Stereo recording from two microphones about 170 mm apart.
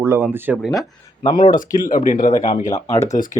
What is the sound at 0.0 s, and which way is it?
Speech, 15° right (ahead or behind).